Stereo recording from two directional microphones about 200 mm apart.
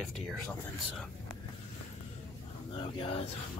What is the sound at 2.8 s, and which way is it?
Speech, 25° left (ahead or behind).